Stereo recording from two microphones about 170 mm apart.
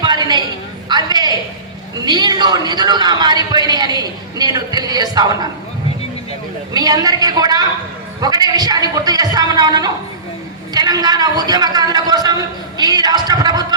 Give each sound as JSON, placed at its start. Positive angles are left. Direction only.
{"t": 0.0, "sound": "a sound", "side_deg": -25}
{"t": 2.0, "sound": "a man's voice", "side_deg": -25}
{"t": 6.7, "sound": "a man's voice", "side_deg": -20}